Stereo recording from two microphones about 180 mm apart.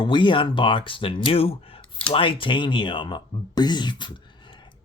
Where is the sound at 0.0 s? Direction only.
25° left (ahead or behind).